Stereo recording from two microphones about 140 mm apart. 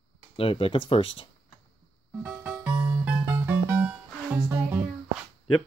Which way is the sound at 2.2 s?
10° right (ahead or behind).